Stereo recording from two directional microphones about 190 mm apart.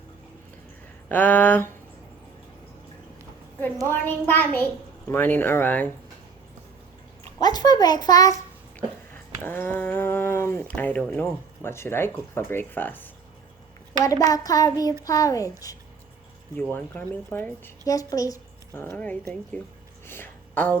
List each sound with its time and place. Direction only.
1.0 s speech: 10° left (ahead or behind)
3.6 s speech: 10° left (ahead or behind)
7.3 s a child's voice: 20° left (ahead or behind)
16.7 s speech: 10° left (ahead or behind)
20.1 s a sound: 10° left (ahead or behind)